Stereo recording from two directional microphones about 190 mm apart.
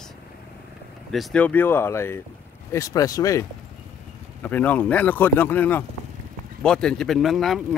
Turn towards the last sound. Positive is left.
turn(degrees=0)  # may be behind; listen again after turning